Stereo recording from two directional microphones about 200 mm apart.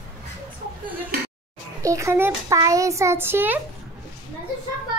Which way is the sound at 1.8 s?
15° right (ahead or behind).